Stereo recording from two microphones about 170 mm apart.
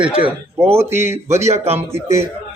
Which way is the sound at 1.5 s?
40° right (ahead or behind).